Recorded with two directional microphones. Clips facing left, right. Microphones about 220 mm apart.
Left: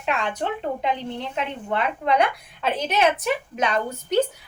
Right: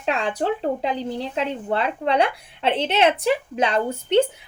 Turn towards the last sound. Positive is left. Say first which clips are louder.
# right 3 dB
turn(degrees=-30)  # may be behind; listen again after turning